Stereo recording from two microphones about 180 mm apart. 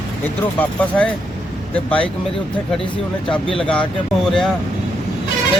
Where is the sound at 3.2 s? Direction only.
30° left (ahead or behind).